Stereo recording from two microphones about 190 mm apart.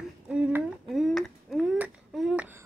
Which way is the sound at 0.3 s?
5° right (ahead or behind).